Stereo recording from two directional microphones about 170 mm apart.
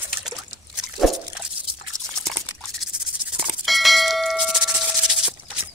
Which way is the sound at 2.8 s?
Centre (ahead or behind).